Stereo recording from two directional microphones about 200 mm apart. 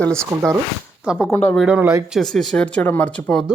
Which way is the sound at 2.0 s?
Centre (ahead or behind).